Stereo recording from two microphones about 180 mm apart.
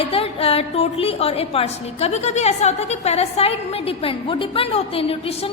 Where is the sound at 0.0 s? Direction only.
35° left (ahead or behind).